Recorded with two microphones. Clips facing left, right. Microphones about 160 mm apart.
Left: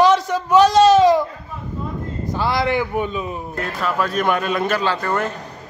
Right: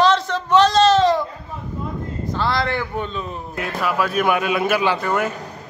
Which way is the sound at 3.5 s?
5° right (ahead or behind).